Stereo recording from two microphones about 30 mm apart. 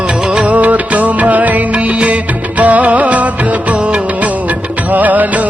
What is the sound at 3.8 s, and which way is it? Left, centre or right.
Music of bollywood, right.